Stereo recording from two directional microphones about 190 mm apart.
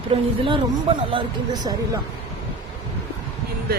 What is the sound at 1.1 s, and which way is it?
Speech, 25° right (ahead or behind).